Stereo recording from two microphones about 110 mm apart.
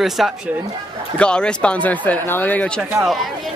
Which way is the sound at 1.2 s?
10° left (ahead or behind).